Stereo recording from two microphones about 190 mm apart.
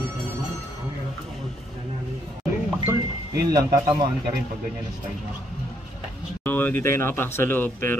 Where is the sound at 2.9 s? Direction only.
20° right (ahead or behind).